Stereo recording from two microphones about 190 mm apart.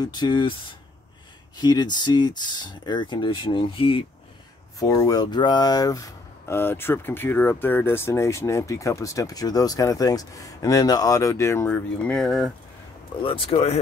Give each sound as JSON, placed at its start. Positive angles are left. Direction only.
{"t": 0.0, "sound": "speech", "side_deg": 20}
{"t": 4.7, "sound": "speech", "side_deg": 15}
{"t": 13.2, "sound": "speech", "side_deg": 30}